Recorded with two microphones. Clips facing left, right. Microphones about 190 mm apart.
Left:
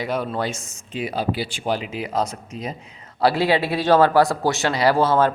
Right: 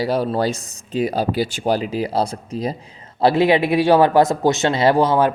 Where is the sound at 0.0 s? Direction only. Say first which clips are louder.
Right 5 dB; 35° right (ahead or behind).